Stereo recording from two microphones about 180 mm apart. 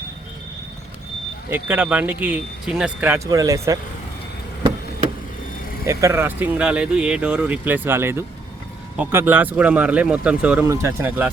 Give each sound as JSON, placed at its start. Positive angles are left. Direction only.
{"t": 1.5, "sound": "speech", "side_deg": -10}
{"t": 3.2, "sound": "speech", "side_deg": -20}
{"t": 5.8, "sound": "speech", "side_deg": -15}